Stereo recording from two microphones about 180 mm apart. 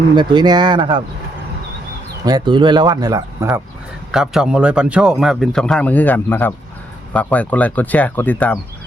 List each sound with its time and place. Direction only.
0.2 s speech: 25° right (ahead or behind)
2.2 s speech: 25° right (ahead or behind)
4.1 s a man's voice: 5° right (ahead or behind)